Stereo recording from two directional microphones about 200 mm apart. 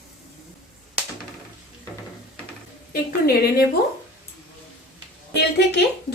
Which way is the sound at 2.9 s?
50° left (ahead or behind).